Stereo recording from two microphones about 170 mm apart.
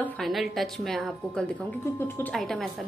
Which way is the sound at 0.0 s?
Centre (ahead or behind).